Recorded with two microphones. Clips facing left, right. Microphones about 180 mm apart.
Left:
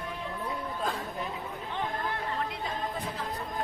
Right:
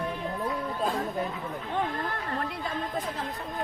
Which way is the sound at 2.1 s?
50° right (ahead or behind).